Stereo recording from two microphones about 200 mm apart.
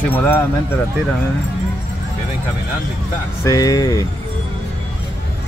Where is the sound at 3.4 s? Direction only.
15° left (ahead or behind).